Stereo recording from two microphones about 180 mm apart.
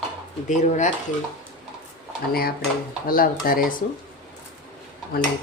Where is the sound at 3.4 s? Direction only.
55° left (ahead or behind).